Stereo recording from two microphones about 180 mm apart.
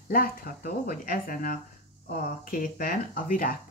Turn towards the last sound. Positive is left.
turn(degrees=50)  # may be behind; listen again after turning